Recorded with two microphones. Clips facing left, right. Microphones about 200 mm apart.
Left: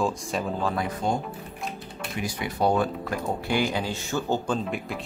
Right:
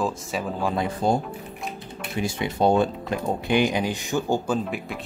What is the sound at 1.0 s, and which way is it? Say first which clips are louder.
Speech: right 4 dB; 35° right (ahead or behind).